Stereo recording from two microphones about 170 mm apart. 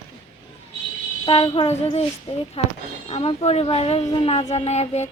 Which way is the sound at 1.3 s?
30° left (ahead or behind).